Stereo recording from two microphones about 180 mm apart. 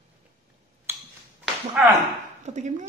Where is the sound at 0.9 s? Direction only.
10° right (ahead or behind).